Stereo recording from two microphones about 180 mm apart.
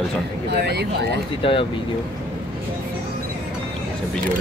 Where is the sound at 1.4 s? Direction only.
30° left (ahead or behind).